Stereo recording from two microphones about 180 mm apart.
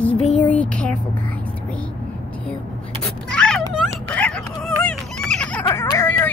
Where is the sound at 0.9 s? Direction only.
50° right (ahead or behind).